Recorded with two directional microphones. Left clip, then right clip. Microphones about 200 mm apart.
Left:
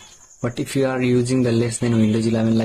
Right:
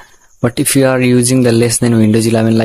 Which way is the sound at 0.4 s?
45° right (ahead or behind).